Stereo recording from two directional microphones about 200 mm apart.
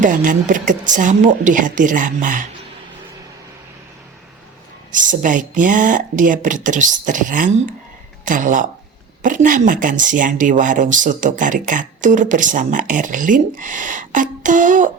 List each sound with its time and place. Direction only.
0.0 s speech: 40° right (ahead or behind)
4.9 s speech: 40° right (ahead or behind)